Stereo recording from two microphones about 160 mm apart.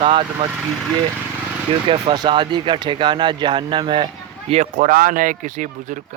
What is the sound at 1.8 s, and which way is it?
Speech, 35° right (ahead or behind).